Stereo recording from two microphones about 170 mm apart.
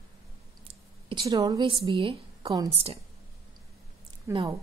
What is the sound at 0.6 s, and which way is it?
Speech, 25° right (ahead or behind).